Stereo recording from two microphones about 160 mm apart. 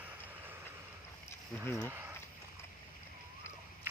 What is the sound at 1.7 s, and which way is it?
Speech, 15° left (ahead or behind).